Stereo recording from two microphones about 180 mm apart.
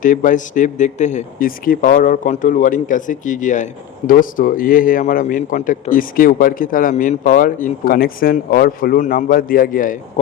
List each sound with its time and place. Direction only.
0.0 s a man's voice: 45° left (ahead or behind)